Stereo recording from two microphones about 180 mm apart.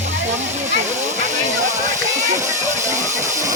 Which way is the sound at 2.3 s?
15° right (ahead or behind).